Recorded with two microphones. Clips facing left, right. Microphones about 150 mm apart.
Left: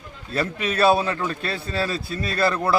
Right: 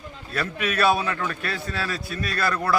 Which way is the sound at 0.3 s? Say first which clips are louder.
Left 3 dB; 30° left (ahead or behind).